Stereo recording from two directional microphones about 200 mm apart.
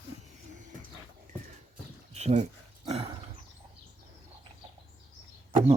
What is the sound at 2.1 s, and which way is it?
Speech, 35° right (ahead or behind).